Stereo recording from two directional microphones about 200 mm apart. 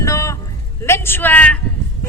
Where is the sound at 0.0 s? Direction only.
15° left (ahead or behind).